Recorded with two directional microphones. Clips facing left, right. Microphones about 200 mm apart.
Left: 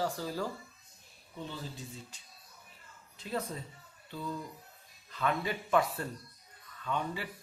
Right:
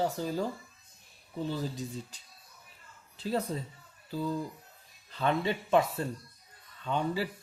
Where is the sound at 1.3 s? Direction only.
35° right (ahead or behind).